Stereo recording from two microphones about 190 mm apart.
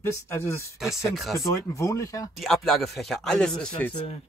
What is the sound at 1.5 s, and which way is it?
Speech, 15° left (ahead or behind).